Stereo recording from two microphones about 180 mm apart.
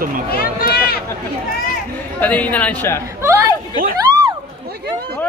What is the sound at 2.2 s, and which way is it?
Speech, 10° left (ahead or behind).